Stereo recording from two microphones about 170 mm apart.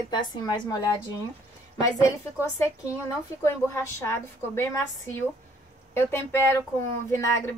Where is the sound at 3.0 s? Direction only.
15° left (ahead or behind).